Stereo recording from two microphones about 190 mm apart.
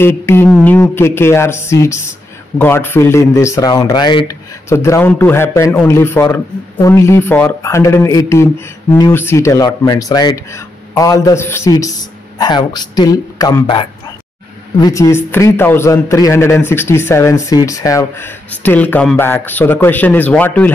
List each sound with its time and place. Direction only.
0.0 s speech: 10° left (ahead or behind)
0.5 s speech: centre (ahead or behind)
0.7 s speech: 10° left (ahead or behind)